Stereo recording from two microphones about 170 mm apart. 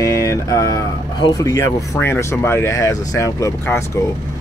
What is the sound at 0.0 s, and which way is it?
Speech, 20° left (ahead or behind).